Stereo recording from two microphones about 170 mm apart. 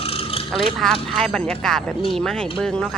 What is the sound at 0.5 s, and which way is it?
Speech, 5° left (ahead or behind).